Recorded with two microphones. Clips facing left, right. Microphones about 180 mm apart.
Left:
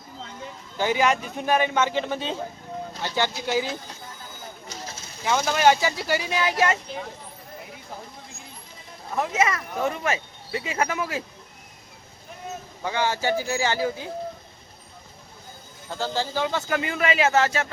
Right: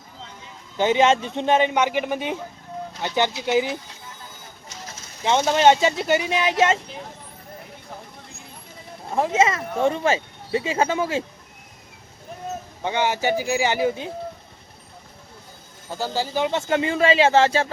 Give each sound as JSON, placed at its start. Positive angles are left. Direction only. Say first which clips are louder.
{"t": 0.8, "sound": "speech", "louder": "right 4 dB", "side_deg": -20}
{"t": 5.2, "sound": "speech", "louder": "right 3 dB", "side_deg": -25}
{"t": 9.0, "sound": "speech", "louder": "right 4 dB", "side_deg": -25}
{"t": 12.8, "sound": "speech", "louder": "right 3 dB", "side_deg": -20}
{"t": 15.9, "sound": "speech", "louder": "right 2 dB", "side_deg": -15}